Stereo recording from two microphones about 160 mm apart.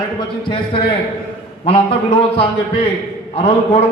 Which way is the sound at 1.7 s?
35° left (ahead or behind).